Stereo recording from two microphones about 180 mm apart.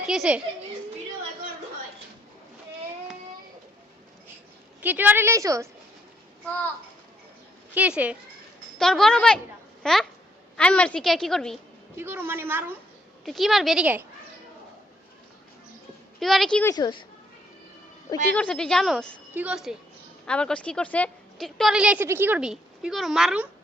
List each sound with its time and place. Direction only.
0.0 s speech: 5° right (ahead or behind)
4.8 s a woman's voice: 10° right (ahead or behind)
7.7 s a woman's voice: 5° right (ahead or behind)
9.8 s babbling: 5° left (ahead or behind)
10.6 s a woman's voice: 5° left (ahead or behind)
11.9 s a woman's voice: 10° right (ahead or behind)
13.2 s a woman's voice: centre (ahead or behind)
16.2 s a woman's voice: centre (ahead or behind)
16.7 s speech: 25° left (ahead or behind)
18.3 s a woman's voice: 5° left (ahead or behind)
19.3 s a woman's voice: 10° right (ahead or behind)
20.2 s a woman's voice: 5° left (ahead or behind)